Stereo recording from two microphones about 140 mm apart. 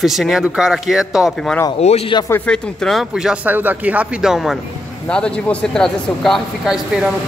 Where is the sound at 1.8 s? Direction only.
50° left (ahead or behind).